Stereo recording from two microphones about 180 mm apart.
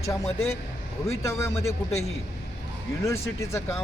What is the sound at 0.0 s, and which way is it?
A man's voice, 15° left (ahead or behind).